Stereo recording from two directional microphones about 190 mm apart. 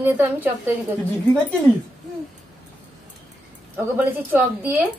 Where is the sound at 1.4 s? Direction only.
10° left (ahead or behind).